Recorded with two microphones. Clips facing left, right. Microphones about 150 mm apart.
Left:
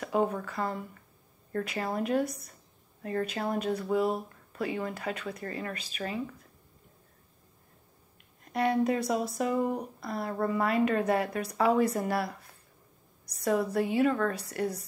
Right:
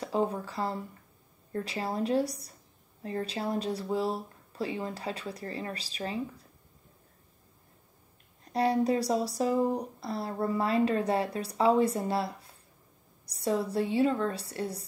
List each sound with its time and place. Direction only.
0.0 s a woman's voice: 30° right (ahead or behind)
8.5 s a woman's voice: 30° right (ahead or behind)